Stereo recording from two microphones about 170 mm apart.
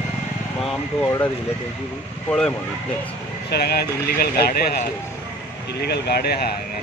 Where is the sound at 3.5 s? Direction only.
70° left (ahead or behind).